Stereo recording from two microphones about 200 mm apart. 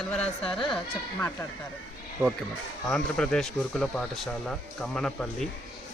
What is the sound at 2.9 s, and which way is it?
Speech, 5° left (ahead or behind).